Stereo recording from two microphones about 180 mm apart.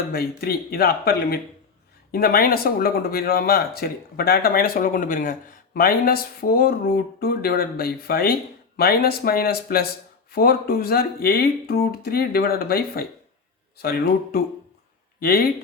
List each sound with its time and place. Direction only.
0.1 s speech: 55° left (ahead or behind)